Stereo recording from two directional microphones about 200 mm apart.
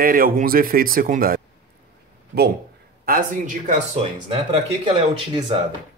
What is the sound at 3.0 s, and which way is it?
Speech, 45° right (ahead or behind).